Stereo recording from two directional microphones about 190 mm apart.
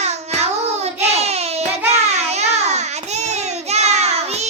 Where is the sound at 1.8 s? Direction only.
35° right (ahead or behind).